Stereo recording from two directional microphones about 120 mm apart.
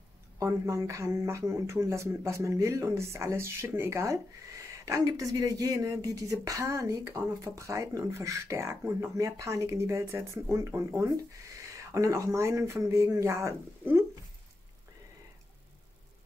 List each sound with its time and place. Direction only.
0.4 s speech: 25° right (ahead or behind)